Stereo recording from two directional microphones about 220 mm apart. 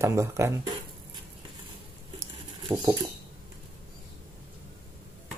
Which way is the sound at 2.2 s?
15° right (ahead or behind).